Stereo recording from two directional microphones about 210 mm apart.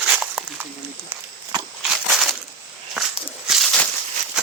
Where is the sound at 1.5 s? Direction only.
20° right (ahead or behind).